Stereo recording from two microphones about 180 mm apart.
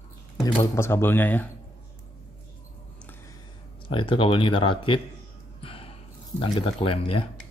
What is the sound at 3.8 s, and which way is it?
Speech, 30° left (ahead or behind).